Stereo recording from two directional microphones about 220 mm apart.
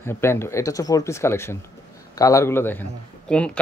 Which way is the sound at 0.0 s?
10° left (ahead or behind).